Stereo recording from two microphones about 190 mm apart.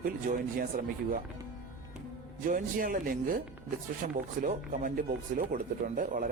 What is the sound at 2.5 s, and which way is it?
Speech, 45° right (ahead or behind).